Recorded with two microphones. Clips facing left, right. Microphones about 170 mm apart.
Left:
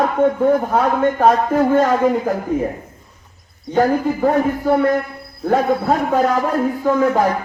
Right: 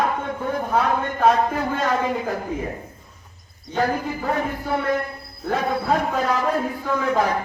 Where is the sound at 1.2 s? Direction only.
45° left (ahead or behind).